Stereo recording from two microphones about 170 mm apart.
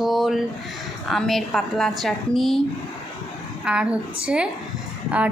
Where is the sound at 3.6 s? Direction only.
5° right (ahead or behind).